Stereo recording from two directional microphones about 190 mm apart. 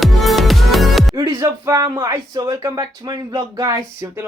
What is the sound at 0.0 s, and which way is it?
Music, centre (ahead or behind).